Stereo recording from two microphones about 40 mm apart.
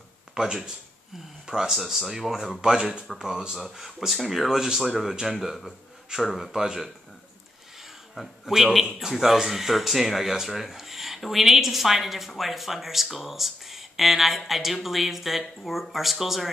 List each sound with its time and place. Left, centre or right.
0.3 s speech: centre
5.1 s speech: centre
8.1 s a man's voice: centre